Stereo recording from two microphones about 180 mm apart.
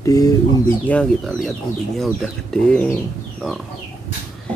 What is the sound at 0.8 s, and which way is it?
Speech, 5° left (ahead or behind).